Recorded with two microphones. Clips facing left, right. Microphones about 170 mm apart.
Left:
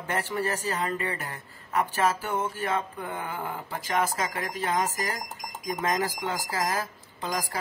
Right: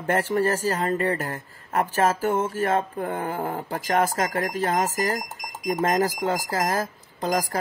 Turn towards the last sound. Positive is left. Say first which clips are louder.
# right 7 dB
turn(degrees=-45)  # may be behind; listen again after turning